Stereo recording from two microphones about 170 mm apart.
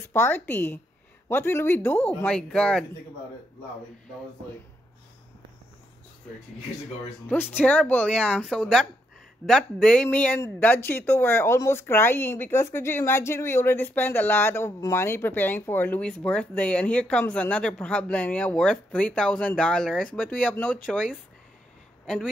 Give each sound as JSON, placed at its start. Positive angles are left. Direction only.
{"t": 0.1, "sound": "a woman's voice", "side_deg": 15}
{"t": 7.5, "sound": "a woman's voice", "side_deg": 10}